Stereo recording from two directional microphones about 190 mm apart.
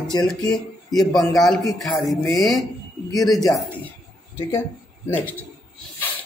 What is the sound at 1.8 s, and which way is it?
Speech, centre (ahead or behind).